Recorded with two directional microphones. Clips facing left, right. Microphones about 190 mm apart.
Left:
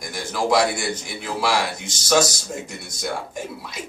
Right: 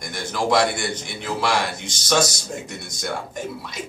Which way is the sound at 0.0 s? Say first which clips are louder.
Even; 5° left (ahead or behind).